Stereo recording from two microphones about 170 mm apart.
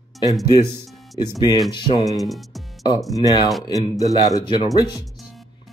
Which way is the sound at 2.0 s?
Centre (ahead or behind).